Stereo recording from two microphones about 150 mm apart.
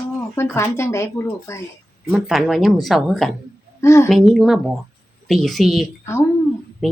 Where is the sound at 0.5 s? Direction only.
15° left (ahead or behind).